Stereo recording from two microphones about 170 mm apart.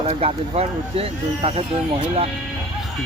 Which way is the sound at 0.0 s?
30° right (ahead or behind).